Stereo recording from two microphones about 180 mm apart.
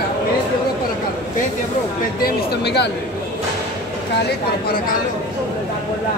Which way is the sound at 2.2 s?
65° left (ahead or behind).